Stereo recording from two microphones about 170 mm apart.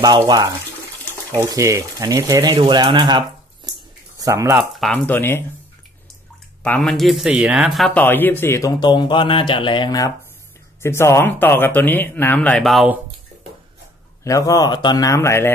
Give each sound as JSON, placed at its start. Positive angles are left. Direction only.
{"t": 0.0, "sound": "speech", "side_deg": -20}
{"t": 4.6, "sound": "speech", "side_deg": 0}
{"t": 6.6, "sound": "speech", "side_deg": 5}
{"t": 8.0, "sound": "speech", "side_deg": 10}
{"t": 14.2, "sound": "speech", "side_deg": 20}